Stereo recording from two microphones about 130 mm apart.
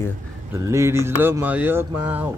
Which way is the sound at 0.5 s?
20° right (ahead or behind).